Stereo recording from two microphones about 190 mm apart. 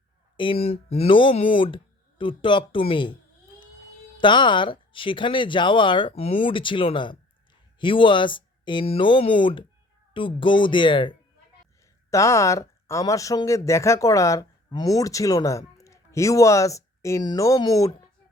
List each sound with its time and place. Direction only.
0.3 s speech: 30° left (ahead or behind)
4.2 s speech: 25° left (ahead or behind)